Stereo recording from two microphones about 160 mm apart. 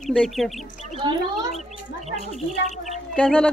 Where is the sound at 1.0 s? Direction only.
30° right (ahead or behind).